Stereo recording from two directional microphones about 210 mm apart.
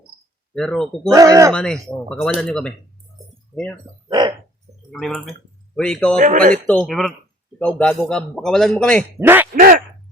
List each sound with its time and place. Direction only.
0.5 s a man's voice: 5° left (ahead or behind)
1.1 s speech: 15° right (ahead or behind)
1.5 s a man's voice: 5° left (ahead or behind)
3.2 s a sound: 15° right (ahead or behind)
4.9 s a man's voice: centre (ahead or behind)
6.1 s speech: 40° right (ahead or behind)
6.7 s a man's voice: 5° left (ahead or behind)
9.1 s speech: 10° right (ahead or behind)
9.6 s speech: 45° right (ahead or behind)